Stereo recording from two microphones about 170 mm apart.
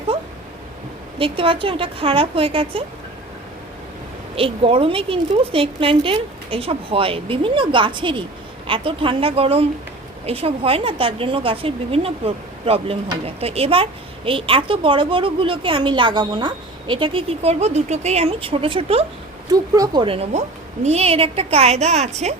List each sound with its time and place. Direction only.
1.2 s a woman's voice: 30° right (ahead or behind)
4.4 s a woman's voice: 35° right (ahead or behind)
19.5 s a woman's voice: 20° right (ahead or behind); by 22.4 s 40° right (ahead or behind)